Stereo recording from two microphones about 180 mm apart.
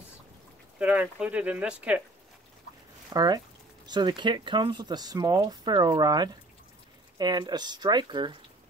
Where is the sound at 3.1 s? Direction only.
20° right (ahead or behind).